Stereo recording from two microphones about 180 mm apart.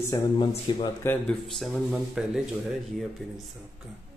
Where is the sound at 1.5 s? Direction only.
Centre (ahead or behind).